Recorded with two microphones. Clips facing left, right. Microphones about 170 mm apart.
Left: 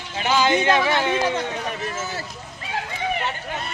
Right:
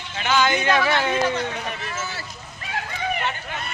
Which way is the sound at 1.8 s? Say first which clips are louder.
Left 3 dB; 40° left (ahead or behind).